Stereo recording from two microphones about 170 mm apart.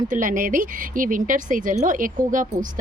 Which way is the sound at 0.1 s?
50° right (ahead or behind).